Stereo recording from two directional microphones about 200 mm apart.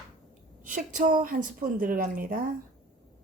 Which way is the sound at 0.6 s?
40° right (ahead or behind).